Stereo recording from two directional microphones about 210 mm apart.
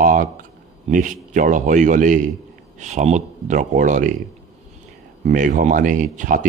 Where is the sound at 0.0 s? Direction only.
40° right (ahead or behind).